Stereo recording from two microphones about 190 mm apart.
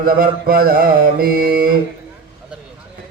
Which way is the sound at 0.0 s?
50° right (ahead or behind).